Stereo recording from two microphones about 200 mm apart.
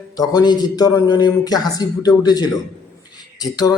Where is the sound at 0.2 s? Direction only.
20° left (ahead or behind).